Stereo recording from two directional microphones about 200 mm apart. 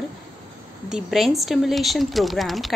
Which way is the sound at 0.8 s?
Centre (ahead or behind).